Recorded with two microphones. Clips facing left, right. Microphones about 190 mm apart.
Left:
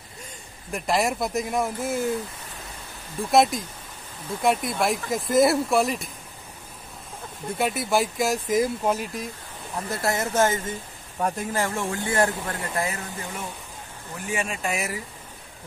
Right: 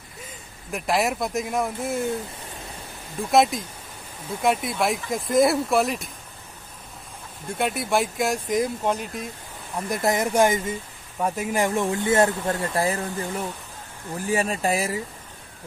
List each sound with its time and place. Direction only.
0.7 s speech: centre (ahead or behind)
3.2 s speech: centre (ahead or behind)
7.5 s speech: centre (ahead or behind)
9.8 s speech: 15° right (ahead or behind)
11.5 s speech: 15° right (ahead or behind); by 15.0 s 35° right (ahead or behind)